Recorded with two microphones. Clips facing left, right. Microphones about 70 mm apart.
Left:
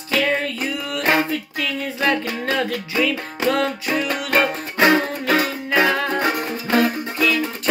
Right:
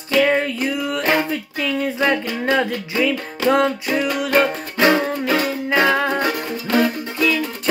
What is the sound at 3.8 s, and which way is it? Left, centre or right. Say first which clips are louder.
Music: right 2 dB; centre.